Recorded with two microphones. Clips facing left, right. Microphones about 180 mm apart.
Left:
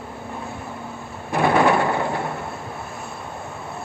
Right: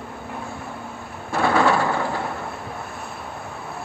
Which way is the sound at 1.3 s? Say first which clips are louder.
Left 2 dB; 20° left (ahead or behind).